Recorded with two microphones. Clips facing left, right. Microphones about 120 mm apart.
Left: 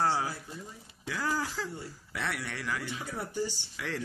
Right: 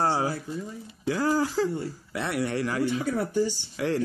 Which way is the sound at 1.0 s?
35° right (ahead or behind).